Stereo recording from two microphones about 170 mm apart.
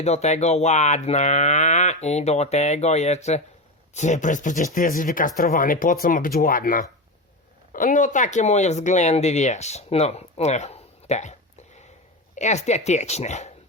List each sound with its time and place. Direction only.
0.0 s speech: 40° left (ahead or behind)